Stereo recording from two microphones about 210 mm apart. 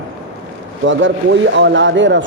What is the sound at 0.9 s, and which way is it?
A man's voice, 60° right (ahead or behind).